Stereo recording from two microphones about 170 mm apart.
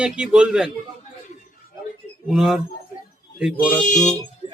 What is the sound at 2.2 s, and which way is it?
A man's voice, centre (ahead or behind).